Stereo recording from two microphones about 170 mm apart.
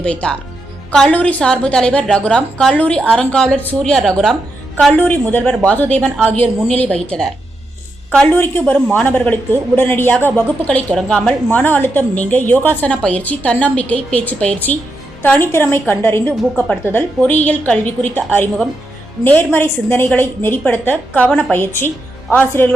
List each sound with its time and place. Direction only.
0.0 s a woman's voice: 5° left (ahead or behind)